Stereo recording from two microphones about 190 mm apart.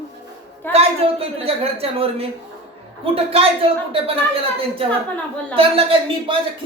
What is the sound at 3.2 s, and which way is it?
Speech, 30° right (ahead or behind).